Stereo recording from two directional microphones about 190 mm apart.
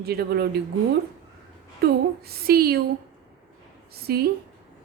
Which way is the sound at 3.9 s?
55° right (ahead or behind).